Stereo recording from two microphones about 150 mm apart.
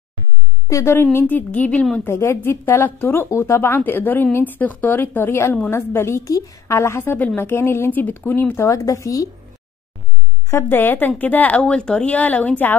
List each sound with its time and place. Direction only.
0.7 s a woman's voice: 20° left (ahead or behind)
10.5 s a woman's voice: 15° left (ahead or behind)